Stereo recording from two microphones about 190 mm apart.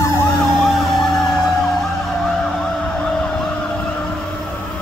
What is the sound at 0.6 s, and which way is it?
Emergency vehicle, centre (ahead or behind).